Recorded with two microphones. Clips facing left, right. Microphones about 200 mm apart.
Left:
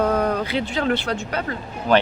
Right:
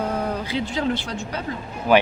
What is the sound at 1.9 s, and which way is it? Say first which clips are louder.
Speech: right 1 dB; 10° right (ahead or behind).